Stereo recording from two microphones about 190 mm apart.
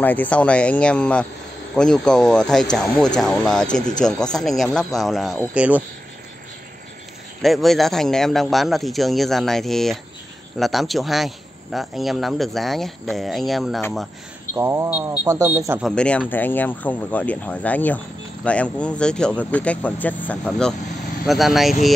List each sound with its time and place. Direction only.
0.0 s speech: 10° left (ahead or behind); by 5.9 s 5° right (ahead or behind)
7.4 s speech: centre (ahead or behind)
14.5 s speech: 15° right (ahead or behind)
15.8 s speech: 5° left (ahead or behind)